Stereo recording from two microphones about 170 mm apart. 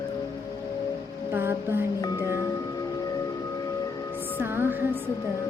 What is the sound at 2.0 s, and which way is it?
Music, 20° left (ahead or behind).